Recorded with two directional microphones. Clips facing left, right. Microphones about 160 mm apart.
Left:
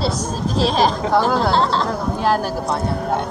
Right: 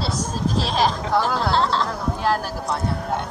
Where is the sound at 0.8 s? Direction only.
20° left (ahead or behind).